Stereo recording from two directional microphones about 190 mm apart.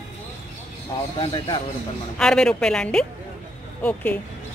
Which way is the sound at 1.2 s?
25° left (ahead or behind).